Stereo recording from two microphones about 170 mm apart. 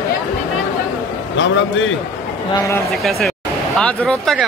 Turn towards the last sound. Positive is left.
turn(degrees=5)  # may be behind; listen again after turning